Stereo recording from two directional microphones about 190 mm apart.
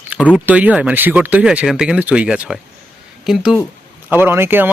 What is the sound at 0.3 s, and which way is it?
Speech, 5° right (ahead or behind).